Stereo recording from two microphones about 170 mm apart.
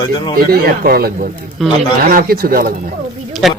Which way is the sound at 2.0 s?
60° right (ahead or behind).